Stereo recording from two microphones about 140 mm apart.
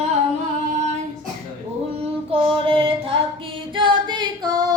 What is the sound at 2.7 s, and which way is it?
Music, 40° right (ahead or behind).